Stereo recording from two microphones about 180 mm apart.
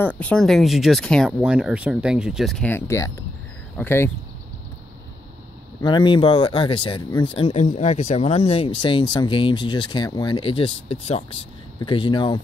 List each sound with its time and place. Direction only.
0.0 s speech: 10° left (ahead or behind)
5.8 s speech: 25° left (ahead or behind)